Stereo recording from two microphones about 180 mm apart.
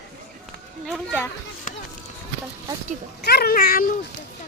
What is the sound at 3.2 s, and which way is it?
Speech, 65° left (ahead or behind).